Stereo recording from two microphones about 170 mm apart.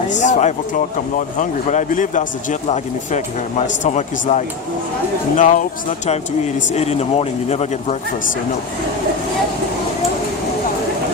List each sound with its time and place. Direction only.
0.1 s speech: 45° left (ahead or behind)